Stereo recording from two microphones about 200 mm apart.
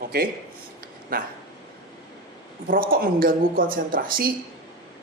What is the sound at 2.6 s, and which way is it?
A man's voice, 45° right (ahead or behind).